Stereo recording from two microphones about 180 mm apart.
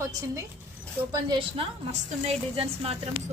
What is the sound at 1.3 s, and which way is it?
A woman's voice, 30° right (ahead or behind).